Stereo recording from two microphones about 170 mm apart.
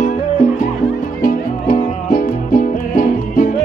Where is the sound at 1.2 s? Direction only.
55° left (ahead or behind).